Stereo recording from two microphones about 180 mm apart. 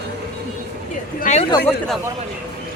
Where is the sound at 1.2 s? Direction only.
40° left (ahead or behind).